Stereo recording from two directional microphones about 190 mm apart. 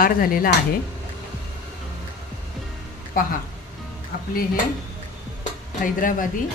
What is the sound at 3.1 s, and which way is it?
Speech, 50° left (ahead or behind).